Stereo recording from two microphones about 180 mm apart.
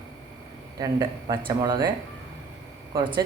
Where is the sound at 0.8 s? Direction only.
25° right (ahead or behind).